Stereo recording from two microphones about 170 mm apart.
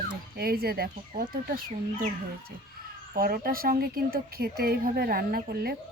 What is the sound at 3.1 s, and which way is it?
A woman's voice, 60° right (ahead or behind).